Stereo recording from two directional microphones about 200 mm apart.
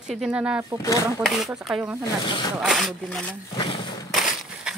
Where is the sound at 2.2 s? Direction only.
25° left (ahead or behind).